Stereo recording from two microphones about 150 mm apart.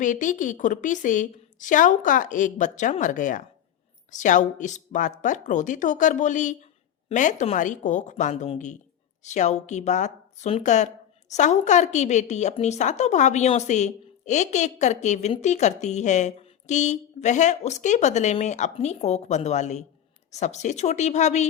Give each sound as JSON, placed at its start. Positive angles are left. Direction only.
{"t": 0.0, "sound": "a woman's voice", "side_deg": 60}